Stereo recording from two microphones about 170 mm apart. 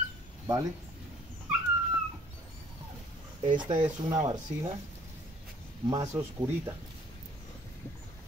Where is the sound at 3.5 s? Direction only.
25° right (ahead or behind).